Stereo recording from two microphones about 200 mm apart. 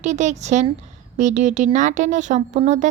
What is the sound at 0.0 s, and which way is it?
A woman's voice, 35° right (ahead or behind).